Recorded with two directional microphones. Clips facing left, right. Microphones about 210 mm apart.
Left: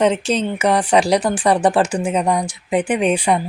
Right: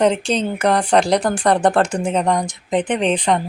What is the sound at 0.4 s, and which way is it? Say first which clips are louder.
Speech: even; 5° left (ahead or behind).